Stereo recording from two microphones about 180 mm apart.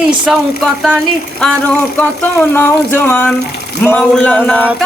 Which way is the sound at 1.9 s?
10° left (ahead or behind).